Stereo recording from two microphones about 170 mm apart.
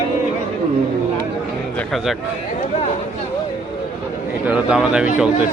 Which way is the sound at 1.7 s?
Centre (ahead or behind).